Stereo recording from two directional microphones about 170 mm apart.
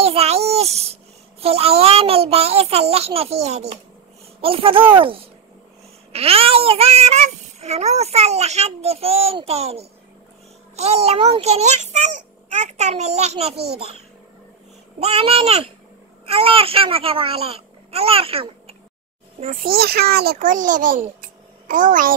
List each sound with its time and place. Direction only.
0.0 s a sound: 35° right (ahead or behind)
1.4 s child singing: 35° right (ahead or behind)
15.0 s child singing: 35° right (ahead or behind)
16.3 s a child's voice: 35° right (ahead or behind)
19.5 s a child's voice: 60° right (ahead or behind)
21.2 s a sound: 50° right (ahead or behind)